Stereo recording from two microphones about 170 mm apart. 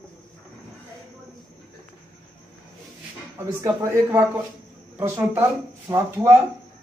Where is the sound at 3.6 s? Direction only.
15° right (ahead or behind).